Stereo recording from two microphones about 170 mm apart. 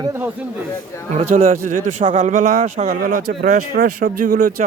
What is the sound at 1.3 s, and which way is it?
Speech, 45° right (ahead or behind).